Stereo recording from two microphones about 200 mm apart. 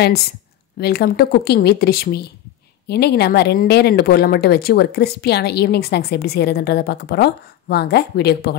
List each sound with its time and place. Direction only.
0.7 s a woman's voice: 50° left (ahead or behind)